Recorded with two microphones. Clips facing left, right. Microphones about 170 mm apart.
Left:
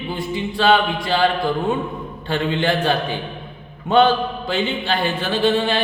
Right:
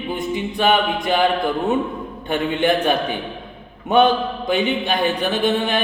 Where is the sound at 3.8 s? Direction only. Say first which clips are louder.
Even; 20° right (ahead or behind).